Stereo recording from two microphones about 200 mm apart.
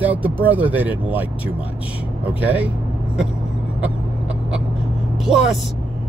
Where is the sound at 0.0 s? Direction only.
10° right (ahead or behind).